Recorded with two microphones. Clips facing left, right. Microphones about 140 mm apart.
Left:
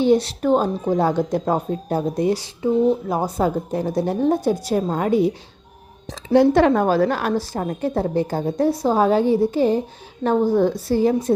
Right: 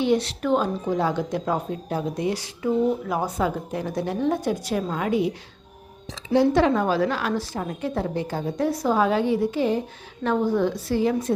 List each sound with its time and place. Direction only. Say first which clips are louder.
0.0 s speech: left 5 dB; 35° left (ahead or behind)
6.1 s speech: left 5 dB; 55° left (ahead or behind); by 11.3 s 35° left (ahead or behind)